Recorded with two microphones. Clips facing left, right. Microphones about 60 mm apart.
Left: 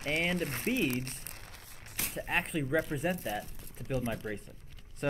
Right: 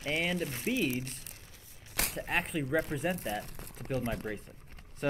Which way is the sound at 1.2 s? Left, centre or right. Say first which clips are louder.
Left 4 dB; left.